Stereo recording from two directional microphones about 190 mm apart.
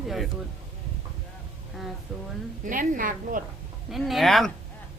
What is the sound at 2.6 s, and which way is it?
Speech, 45° right (ahead or behind).